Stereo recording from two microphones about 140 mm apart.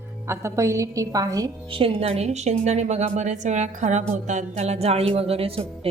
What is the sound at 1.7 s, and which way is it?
A woman's voice, 45° right (ahead or behind).